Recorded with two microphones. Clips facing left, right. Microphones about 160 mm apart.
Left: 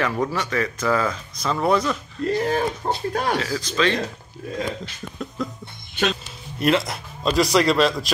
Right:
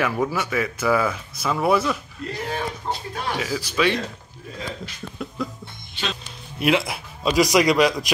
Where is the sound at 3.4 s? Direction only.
10° right (ahead or behind).